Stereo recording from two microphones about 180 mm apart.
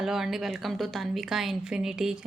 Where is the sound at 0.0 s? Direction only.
Centre (ahead or behind).